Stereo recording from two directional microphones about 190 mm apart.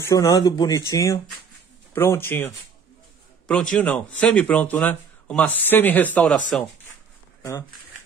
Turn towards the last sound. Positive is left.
turn(degrees=10)  # may be behind; listen again after turning